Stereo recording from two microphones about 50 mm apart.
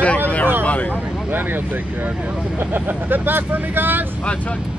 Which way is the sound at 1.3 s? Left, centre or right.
Right.